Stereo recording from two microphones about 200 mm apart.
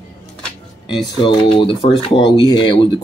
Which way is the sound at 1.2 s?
25° left (ahead or behind).